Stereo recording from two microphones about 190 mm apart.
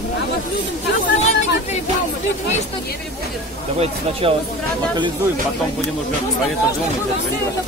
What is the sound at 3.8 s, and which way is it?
Speech, 30° right (ahead or behind).